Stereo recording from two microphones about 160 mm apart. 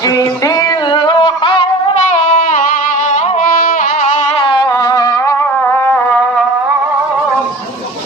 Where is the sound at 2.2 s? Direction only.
55° left (ahead or behind).